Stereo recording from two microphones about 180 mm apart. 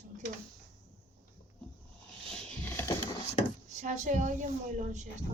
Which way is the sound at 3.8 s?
45° right (ahead or behind).